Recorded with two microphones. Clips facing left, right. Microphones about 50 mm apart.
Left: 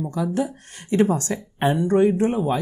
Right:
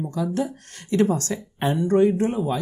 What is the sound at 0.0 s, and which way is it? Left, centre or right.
Speech, centre.